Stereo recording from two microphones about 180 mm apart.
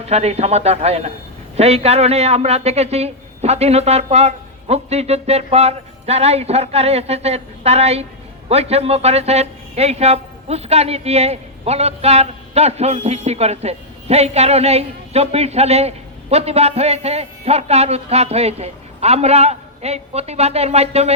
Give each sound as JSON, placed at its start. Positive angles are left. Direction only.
{"t": 0.0, "sound": "a man's voice", "side_deg": -35}